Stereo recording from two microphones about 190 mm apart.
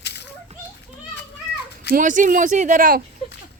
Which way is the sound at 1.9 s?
45° right (ahead or behind).